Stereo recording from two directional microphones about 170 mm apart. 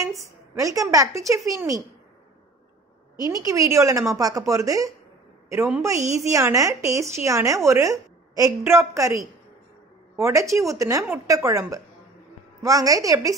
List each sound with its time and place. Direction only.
0.0 s a woman's voice: 20° right (ahead or behind)
3.4 s a woman's voice: 20° right (ahead or behind)